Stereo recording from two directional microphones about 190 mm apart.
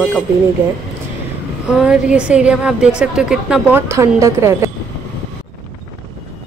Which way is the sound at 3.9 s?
15° right (ahead or behind).